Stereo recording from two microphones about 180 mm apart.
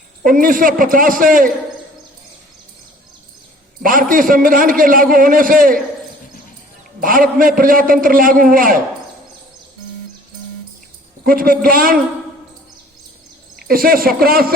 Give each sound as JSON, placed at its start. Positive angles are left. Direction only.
{"t": 0.2, "sound": "a man's voice", "side_deg": -50}
{"t": 3.8, "sound": "a man's voice", "side_deg": -50}
{"t": 7.0, "sound": "a man's voice", "side_deg": -50}
{"t": 11.3, "sound": "a man's voice", "side_deg": -55}
{"t": 13.6, "sound": "speech", "side_deg": -55}